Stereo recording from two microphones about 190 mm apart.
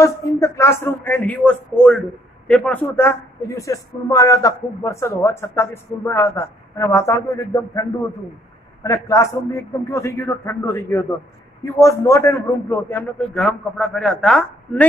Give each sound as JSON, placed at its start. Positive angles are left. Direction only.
{"t": 0.0, "sound": "a woman's voice", "side_deg": 15}
{"t": 8.8, "sound": "a woman's voice", "side_deg": 15}